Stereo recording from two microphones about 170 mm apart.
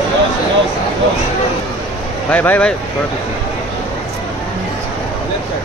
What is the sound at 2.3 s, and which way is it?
Speech, 10° left (ahead or behind).